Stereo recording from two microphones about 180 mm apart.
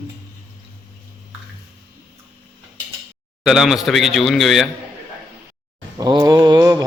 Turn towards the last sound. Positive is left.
turn(degrees=-20)  # may be behind; listen again after turning